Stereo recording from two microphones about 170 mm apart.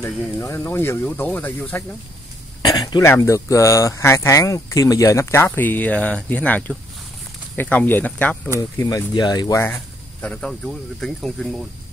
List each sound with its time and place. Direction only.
0.0 s speech: 15° left (ahead or behind)
8.5 s speech: 20° left (ahead or behind)
10.2 s speech: 5° left (ahead or behind)